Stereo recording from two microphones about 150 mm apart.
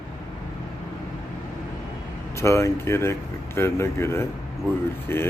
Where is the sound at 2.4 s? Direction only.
20° left (ahead or behind).